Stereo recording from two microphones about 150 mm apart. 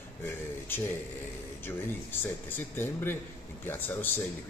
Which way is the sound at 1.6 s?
15° left (ahead or behind).